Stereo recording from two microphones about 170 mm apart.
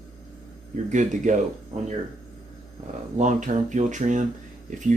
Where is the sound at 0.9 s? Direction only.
45° right (ahead or behind).